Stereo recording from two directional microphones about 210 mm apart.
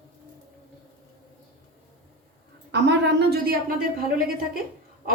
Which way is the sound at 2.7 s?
55° right (ahead or behind).